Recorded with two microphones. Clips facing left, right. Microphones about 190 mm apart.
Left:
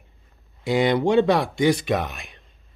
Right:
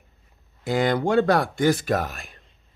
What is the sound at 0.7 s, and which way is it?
Speech, 45° right (ahead or behind).